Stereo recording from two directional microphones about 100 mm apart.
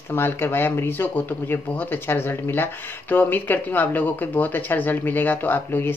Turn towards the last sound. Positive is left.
turn(degrees=20)  # may be behind; listen again after turning